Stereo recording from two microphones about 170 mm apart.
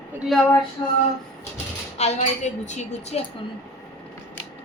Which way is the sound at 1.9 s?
40° left (ahead or behind).